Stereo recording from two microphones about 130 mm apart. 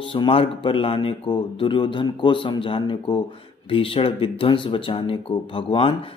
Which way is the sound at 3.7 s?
45° left (ahead or behind).